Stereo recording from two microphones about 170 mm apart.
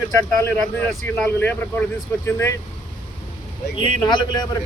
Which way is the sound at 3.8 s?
25° left (ahead or behind).